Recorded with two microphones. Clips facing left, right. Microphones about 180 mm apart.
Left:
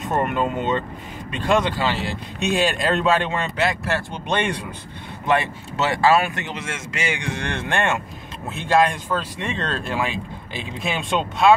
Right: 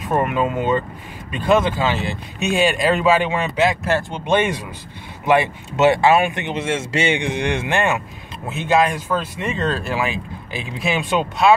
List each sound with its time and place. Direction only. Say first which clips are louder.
0.1 s speech: right 3 dB; 5° right (ahead or behind)